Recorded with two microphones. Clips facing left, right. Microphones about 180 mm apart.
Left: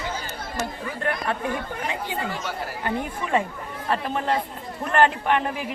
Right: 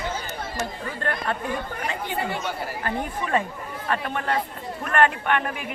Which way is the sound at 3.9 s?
30° left (ahead or behind).